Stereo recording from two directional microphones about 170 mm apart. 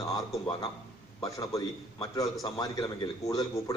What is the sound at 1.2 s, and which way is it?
A man's voice, 20° left (ahead or behind).